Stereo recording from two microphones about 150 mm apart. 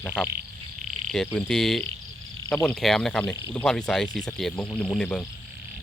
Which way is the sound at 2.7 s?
5° left (ahead or behind).